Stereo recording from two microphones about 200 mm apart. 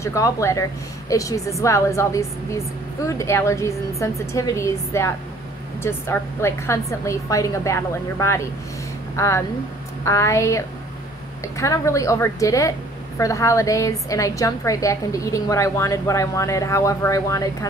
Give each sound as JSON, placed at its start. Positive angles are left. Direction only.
{"t": 0.0, "sound": "a woman's voice", "side_deg": 15}